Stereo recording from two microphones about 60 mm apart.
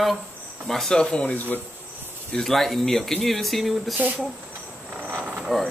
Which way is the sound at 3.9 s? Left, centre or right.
Right.